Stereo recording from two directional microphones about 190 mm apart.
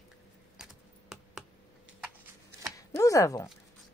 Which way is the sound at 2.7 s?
15° left (ahead or behind).